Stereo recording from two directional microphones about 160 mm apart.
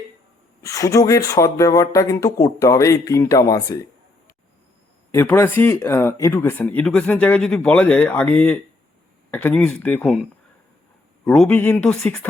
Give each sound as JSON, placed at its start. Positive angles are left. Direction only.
{"t": 0.6, "sound": "speech", "side_deg": 20}
{"t": 5.1, "sound": "speech", "side_deg": 15}
{"t": 11.3, "sound": "speech", "side_deg": 10}